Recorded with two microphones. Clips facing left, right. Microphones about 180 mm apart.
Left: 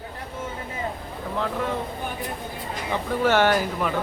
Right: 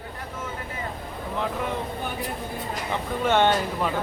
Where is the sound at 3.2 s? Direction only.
25° right (ahead or behind).